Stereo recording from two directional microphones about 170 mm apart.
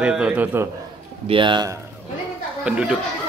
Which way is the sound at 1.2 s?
30° right (ahead or behind).